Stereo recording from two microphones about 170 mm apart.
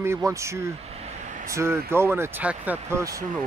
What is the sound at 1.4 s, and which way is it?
Speech, 15° right (ahead or behind).